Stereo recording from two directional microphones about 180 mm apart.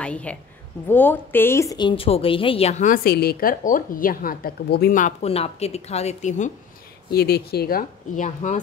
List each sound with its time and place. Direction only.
0.0 s a woman's voice: 5° left (ahead or behind); by 5.1 s 55° left (ahead or behind)
5.2 s speech: 35° left (ahead or behind)
7.1 s speech: 60° left (ahead or behind)